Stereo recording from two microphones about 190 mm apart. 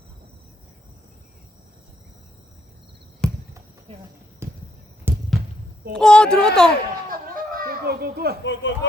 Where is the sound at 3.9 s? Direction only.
30° right (ahead or behind).